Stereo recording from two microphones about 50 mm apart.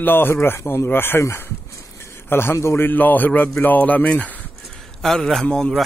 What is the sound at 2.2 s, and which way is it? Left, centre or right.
Speech, left.